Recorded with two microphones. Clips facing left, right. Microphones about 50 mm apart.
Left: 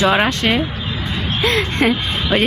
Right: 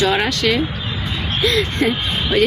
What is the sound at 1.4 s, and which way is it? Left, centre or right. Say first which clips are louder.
Speech: left 1 dB; left.